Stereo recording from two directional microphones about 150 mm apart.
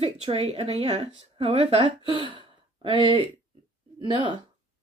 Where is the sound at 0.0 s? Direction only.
40° right (ahead or behind).